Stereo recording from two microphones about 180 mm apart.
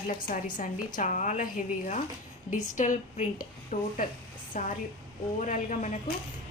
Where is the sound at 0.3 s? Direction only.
50° left (ahead or behind).